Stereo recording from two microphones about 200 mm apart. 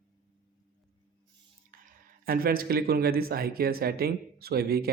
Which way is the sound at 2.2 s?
45° right (ahead or behind).